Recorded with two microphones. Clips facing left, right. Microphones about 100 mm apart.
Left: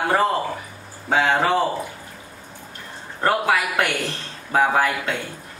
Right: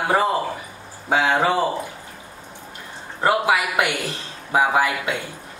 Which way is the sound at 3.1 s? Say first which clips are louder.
Right 1 dB; 15° right (ahead or behind).